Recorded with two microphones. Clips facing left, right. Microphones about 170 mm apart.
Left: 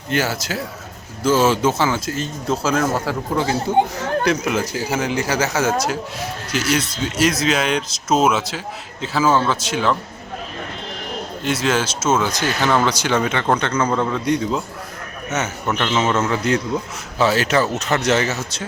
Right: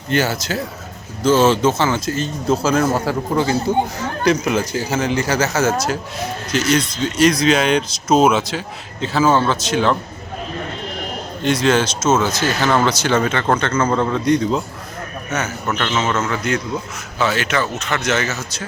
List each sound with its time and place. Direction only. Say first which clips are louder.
0.1 s speech: right 2 dB; 5° left (ahead or behind)
11.4 s speech: right 4 dB; 5° left (ahead or behind)
15.6 s speech: left 2 dB; 10° left (ahead or behind)
16.3 s speech: left 2 dB; 30° left (ahead or behind)